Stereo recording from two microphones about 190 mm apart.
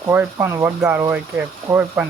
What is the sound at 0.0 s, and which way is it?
Speech, 10° right (ahead or behind).